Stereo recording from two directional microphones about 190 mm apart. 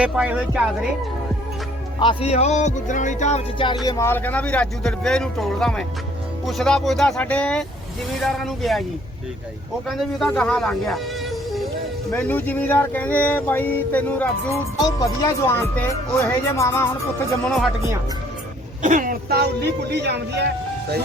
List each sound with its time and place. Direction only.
0.0 s speech: 5° right (ahead or behind)
2.0 s speech: 30° left (ahead or behind)
3.8 s speech: 15° left (ahead or behind)
9.9 s speech: centre (ahead or behind)
18.8 s speech: 45° right (ahead or behind); by 20.4 s 60° right (ahead or behind)